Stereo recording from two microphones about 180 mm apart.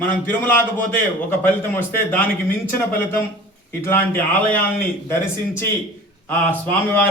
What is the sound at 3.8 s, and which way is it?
Speech, 10° left (ahead or behind).